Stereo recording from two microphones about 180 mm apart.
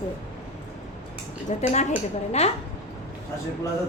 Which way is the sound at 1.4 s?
40° left (ahead or behind).